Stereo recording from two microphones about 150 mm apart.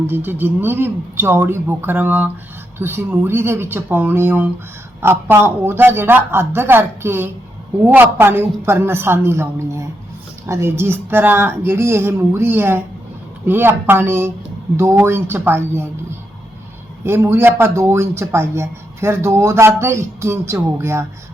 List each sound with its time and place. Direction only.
0.1 s speech: 15° right (ahead or behind)
17.0 s speech: 15° right (ahead or behind)